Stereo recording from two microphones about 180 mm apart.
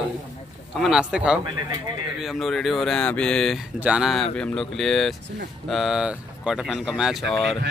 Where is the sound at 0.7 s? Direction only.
Centre (ahead or behind).